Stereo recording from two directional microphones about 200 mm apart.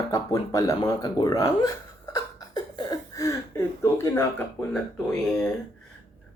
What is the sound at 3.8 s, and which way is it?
Speech, 10° left (ahead or behind).